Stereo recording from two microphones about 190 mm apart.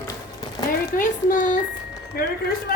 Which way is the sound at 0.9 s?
45° left (ahead or behind).